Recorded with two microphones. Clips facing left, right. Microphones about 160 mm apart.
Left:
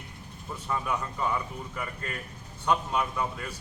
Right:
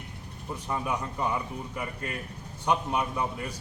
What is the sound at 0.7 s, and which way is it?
A man's voice, 20° right (ahead or behind).